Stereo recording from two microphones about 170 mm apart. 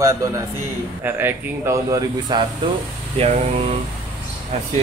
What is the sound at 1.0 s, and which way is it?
Speech, 15° right (ahead or behind).